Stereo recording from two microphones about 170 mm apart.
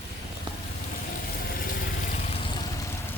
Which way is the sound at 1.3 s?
60° left (ahead or behind).